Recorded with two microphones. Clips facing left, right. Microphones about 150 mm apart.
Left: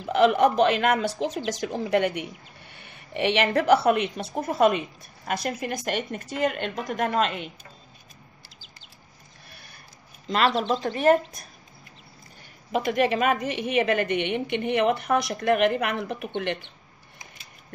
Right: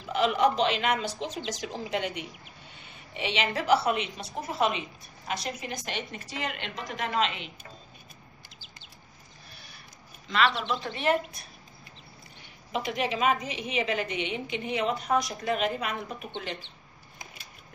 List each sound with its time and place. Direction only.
0.0 s speech: 55° left (ahead or behind)
10.2 s speech: 40° left (ahead or behind)
12.7 s a woman's voice: 55° left (ahead or behind)